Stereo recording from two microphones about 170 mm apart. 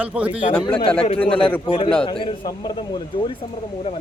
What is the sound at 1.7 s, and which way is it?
A man's voice, 35° left (ahead or behind).